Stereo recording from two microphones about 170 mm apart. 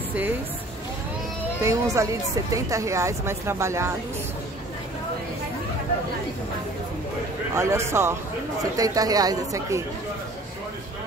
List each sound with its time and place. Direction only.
1.6 s a woman's voice: 15° right (ahead or behind)
7.5 s a woman's voice: 15° right (ahead or behind)